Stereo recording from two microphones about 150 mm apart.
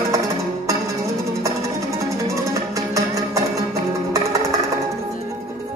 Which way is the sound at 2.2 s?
20° right (ahead or behind).